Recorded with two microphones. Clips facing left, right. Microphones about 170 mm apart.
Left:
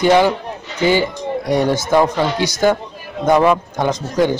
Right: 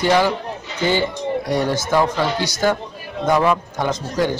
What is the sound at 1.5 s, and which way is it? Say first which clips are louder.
A man's voice: left 6 dB; 15° left (ahead or behind).